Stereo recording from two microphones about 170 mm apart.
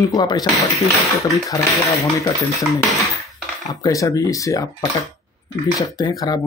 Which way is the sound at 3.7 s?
20° left (ahead or behind).